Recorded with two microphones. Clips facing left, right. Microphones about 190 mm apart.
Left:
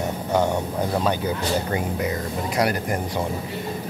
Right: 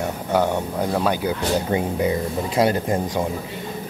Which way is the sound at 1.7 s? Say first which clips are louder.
Right 4 dB; 25° right (ahead or behind).